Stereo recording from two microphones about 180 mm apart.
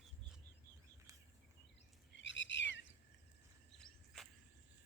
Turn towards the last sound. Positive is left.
turn(degrees=0)  # may be behind; listen again after turning